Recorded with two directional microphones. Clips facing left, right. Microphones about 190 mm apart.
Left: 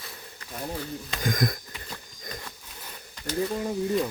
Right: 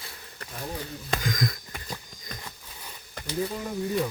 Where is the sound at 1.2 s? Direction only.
50° left (ahead or behind).